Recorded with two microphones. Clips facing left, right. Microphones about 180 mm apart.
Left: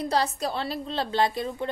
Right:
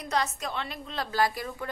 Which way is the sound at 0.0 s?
30° left (ahead or behind).